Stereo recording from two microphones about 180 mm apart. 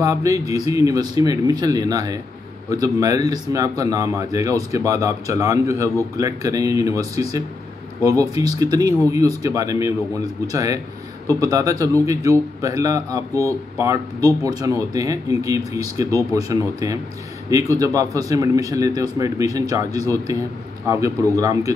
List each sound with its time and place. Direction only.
0.0 s a man's voice: 15° right (ahead or behind)